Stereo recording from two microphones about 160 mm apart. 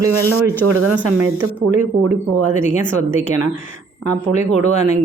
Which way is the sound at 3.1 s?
50° left (ahead or behind).